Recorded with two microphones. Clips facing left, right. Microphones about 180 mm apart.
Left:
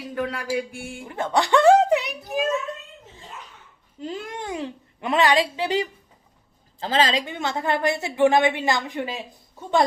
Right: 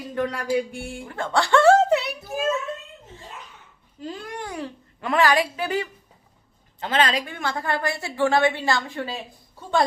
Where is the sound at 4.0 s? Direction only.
20° left (ahead or behind).